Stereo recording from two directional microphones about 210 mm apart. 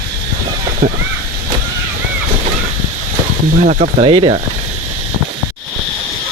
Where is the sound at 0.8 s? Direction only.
35° right (ahead or behind).